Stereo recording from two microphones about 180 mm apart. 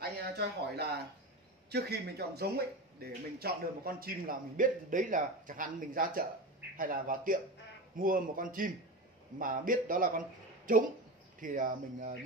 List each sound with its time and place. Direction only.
0.0 s speech: 65° right (ahead or behind)